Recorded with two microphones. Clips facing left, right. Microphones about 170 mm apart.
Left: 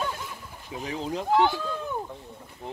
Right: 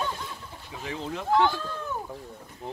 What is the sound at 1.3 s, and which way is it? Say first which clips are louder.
Speech: even; 15° left (ahead or behind).